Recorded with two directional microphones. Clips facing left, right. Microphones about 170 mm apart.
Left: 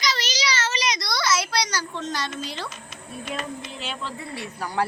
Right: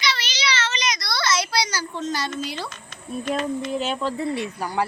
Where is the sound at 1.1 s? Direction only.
10° left (ahead or behind).